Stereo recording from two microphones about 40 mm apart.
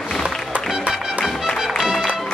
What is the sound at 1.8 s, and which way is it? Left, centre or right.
Music, centre.